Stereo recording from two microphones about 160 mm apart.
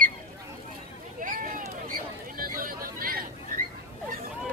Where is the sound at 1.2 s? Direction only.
55° right (ahead or behind).